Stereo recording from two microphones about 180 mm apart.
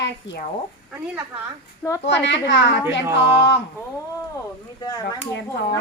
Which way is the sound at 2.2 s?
75° left (ahead or behind).